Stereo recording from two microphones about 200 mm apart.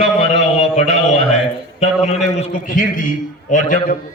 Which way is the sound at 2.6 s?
40° left (ahead or behind).